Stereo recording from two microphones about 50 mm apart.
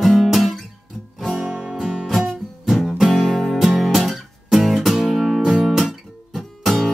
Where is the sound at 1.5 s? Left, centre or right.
Right.